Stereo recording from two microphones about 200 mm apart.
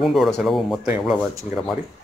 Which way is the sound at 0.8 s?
10° right (ahead or behind).